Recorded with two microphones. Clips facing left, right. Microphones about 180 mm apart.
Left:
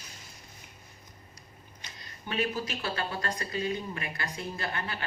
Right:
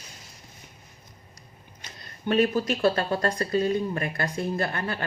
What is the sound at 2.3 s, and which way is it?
Speech, 45° right (ahead or behind).